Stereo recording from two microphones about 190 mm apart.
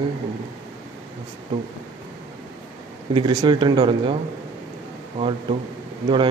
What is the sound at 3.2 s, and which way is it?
A man's voice, 25° right (ahead or behind).